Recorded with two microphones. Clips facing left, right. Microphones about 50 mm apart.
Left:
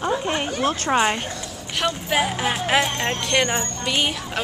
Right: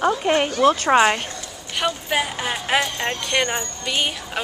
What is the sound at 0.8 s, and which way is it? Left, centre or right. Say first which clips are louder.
Speech: right 4 dB; right.